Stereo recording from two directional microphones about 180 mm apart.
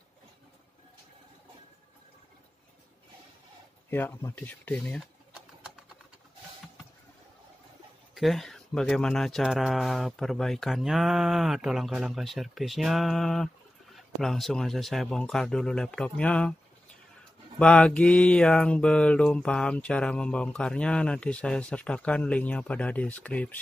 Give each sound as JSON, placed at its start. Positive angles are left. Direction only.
{"t": 3.9, "sound": "mantra", "side_deg": 10}
{"t": 8.1, "sound": "speech", "side_deg": 0}
{"t": 17.6, "sound": "mantra", "side_deg": 5}